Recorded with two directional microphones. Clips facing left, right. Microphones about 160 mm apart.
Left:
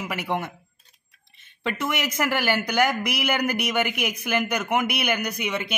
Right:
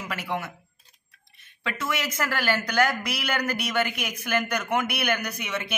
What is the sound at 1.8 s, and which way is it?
A man's voice, 15° left (ahead or behind).